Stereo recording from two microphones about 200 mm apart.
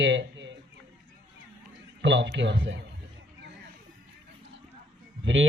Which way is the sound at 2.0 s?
65° right (ahead or behind).